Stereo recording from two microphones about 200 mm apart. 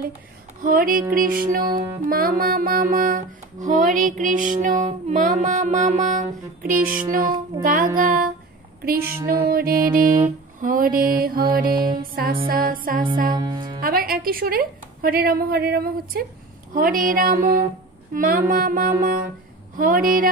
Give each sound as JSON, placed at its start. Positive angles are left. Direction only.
{"t": 0.6, "sound": "music", "side_deg": -45}
{"t": 1.6, "sound": "music", "side_deg": -20}
{"t": 2.0, "sound": "music", "side_deg": -45}
{"t": 13.3, "sound": "music", "side_deg": -20}
{"t": 13.7, "sound": "a woman's voice", "side_deg": -45}
{"t": 16.7, "sound": "music", "side_deg": -45}